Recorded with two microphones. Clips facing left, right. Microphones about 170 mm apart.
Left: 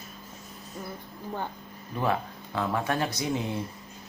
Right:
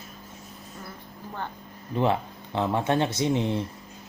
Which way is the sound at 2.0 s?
25° right (ahead or behind).